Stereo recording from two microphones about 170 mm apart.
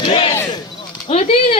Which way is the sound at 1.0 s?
35° left (ahead or behind).